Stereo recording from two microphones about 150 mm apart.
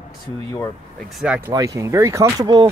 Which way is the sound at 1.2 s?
5° right (ahead or behind).